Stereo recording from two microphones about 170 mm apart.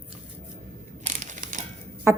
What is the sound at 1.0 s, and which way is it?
Crushing, 45° right (ahead or behind).